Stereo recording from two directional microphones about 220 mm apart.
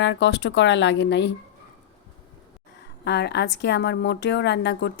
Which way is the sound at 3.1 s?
50° left (ahead or behind).